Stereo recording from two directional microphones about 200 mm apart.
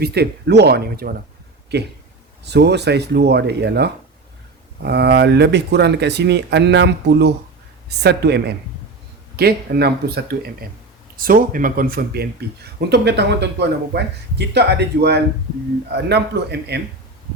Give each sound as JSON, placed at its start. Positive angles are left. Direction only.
{"t": 0.0, "sound": "speech", "side_deg": -55}
{"t": 2.4, "sound": "speech", "side_deg": -55}
{"t": 11.2, "sound": "speech", "side_deg": -45}